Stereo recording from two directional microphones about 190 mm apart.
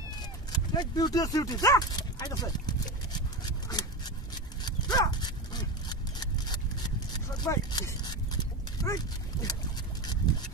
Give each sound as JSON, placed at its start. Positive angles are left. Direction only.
{"t": 0.5, "sound": "speech", "side_deg": 20}
{"t": 3.1, "sound": "a sound", "side_deg": 20}
{"t": 4.6, "sound": "dog", "side_deg": 20}